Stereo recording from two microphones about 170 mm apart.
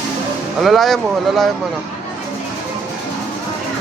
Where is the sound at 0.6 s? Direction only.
Centre (ahead or behind).